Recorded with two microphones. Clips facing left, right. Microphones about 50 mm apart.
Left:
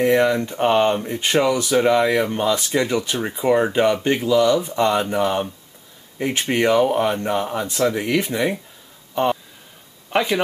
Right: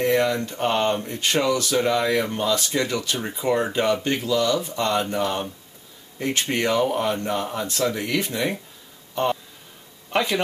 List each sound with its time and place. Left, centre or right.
0.0 s speech: centre
9.1 s a sound: centre
10.1 s speech: centre